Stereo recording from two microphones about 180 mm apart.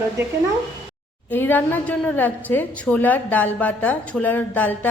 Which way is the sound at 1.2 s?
10° left (ahead or behind).